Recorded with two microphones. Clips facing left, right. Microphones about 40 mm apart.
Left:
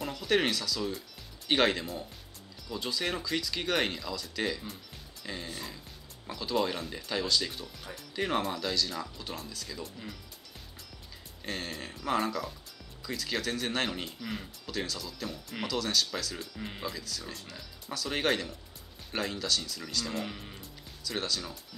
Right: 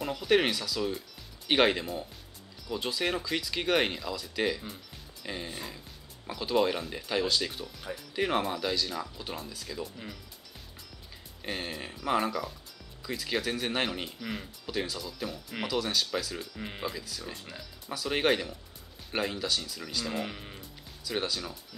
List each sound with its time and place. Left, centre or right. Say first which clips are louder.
0.0 s speech: right 2 dB; centre
11.4 s speech: right 1 dB; centre